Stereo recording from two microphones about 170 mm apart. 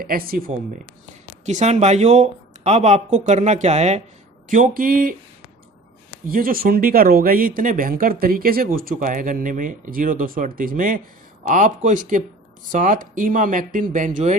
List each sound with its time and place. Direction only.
0.0 s speech: 60° right (ahead or behind)
1.5 s speech: 45° right (ahead or behind)
4.4 s speech: 50° right (ahead or behind)
6.2 s speech: 60° right (ahead or behind)